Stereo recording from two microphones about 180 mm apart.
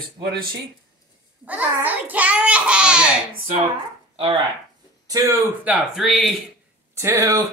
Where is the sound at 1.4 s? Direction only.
10° right (ahead or behind).